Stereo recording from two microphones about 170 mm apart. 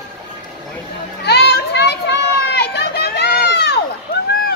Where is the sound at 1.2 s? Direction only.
75° left (ahead or behind).